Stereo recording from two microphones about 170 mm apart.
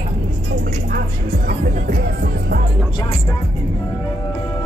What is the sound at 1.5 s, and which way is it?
Music, 55° right (ahead or behind).